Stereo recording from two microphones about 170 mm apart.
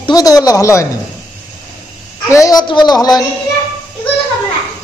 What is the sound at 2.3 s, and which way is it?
Speech, 20° left (ahead or behind).